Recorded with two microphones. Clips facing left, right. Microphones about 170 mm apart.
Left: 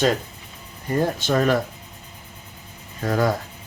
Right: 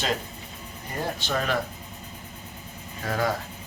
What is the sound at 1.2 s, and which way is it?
Mantra, 45° left (ahead or behind).